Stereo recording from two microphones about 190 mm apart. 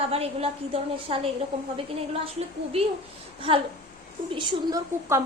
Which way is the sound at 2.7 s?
30° right (ahead or behind).